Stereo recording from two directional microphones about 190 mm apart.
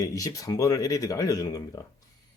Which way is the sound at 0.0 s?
20° left (ahead or behind).